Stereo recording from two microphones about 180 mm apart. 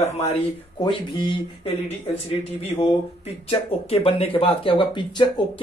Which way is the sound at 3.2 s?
30° left (ahead or behind).